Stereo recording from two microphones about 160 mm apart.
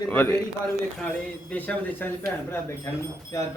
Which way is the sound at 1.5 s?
10° left (ahead or behind).